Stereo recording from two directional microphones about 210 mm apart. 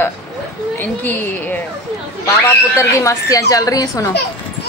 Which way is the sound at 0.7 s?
10° left (ahead or behind).